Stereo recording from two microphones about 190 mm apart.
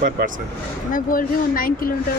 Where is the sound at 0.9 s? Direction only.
45° left (ahead or behind).